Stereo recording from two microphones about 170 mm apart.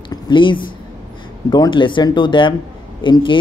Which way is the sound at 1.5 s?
25° left (ahead or behind).